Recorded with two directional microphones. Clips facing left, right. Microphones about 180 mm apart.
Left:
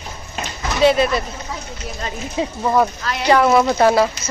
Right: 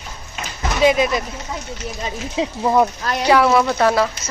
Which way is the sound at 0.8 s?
15° right (ahead or behind).